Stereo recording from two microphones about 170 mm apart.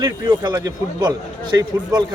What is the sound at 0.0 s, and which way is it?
A man's voice, 20° right (ahead or behind).